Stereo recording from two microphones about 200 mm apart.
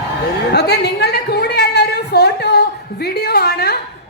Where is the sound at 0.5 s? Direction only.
55° left (ahead or behind).